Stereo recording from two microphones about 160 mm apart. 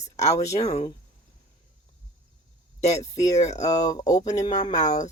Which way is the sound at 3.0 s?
20° left (ahead or behind).